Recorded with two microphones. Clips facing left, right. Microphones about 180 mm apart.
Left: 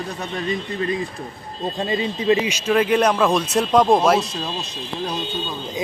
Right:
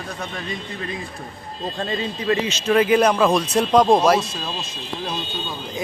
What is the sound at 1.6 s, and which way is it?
Speech, 15° left (ahead or behind).